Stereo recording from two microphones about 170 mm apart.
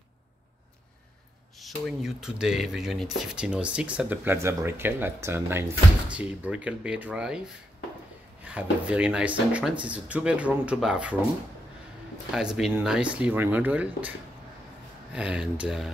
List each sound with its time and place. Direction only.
1.6 s speech: centre (ahead or behind)
12.4 s speech: 5° right (ahead or behind)
15.1 s speech: 5° right (ahead or behind)